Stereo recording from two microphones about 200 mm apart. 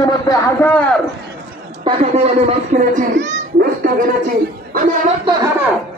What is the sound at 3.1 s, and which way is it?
Babbling, 65° right (ahead or behind).